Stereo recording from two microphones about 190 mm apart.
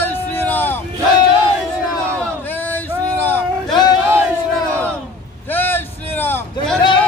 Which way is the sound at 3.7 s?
20° left (ahead or behind).